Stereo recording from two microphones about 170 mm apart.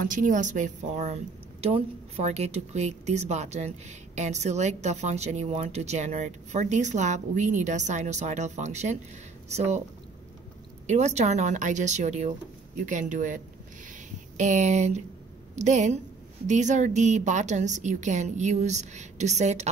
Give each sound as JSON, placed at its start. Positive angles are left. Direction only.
{"t": 0.0, "sound": "a woman's voice", "side_deg": -50}
{"t": 10.9, "sound": "a woman's voice", "side_deg": -40}